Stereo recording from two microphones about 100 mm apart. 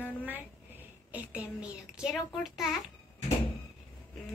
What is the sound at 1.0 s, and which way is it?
Speech, 15° right (ahead or behind).